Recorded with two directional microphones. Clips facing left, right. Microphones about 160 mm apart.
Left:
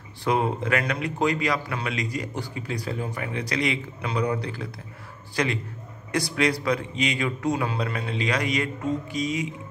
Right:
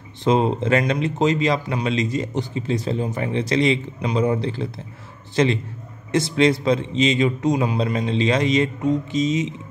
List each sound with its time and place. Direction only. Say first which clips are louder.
0.2 s speech: right 5 dB; 20° right (ahead or behind)